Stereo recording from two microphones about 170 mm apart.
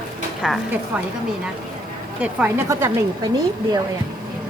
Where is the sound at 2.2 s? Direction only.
10° right (ahead or behind).